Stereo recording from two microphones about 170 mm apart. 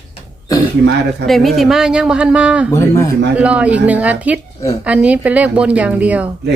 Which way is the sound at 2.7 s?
15° left (ahead or behind).